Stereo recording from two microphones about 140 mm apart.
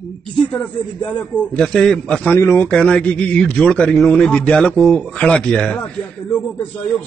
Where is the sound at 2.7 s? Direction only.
10° left (ahead or behind).